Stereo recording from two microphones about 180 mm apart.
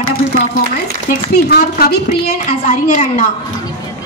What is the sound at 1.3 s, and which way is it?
A woman's voice, 60° left (ahead or behind).